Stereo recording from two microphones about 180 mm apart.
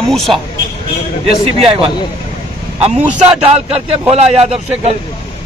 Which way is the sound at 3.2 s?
35° right (ahead or behind).